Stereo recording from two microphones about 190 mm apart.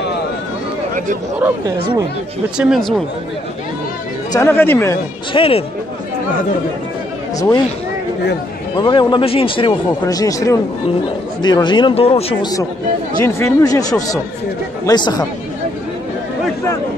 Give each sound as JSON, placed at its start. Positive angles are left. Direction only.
{"t": 2.5, "sound": "speech", "side_deg": -5}
{"t": 4.3, "sound": "speech", "side_deg": 15}
{"t": 5.3, "sound": "speech", "side_deg": 30}
{"t": 7.3, "sound": "speech", "side_deg": 20}
{"t": 8.7, "sound": "speech", "side_deg": 25}